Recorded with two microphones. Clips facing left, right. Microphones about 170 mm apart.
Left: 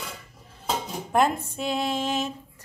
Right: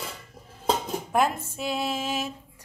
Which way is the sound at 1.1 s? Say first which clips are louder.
Left 2 dB; 5° right (ahead or behind).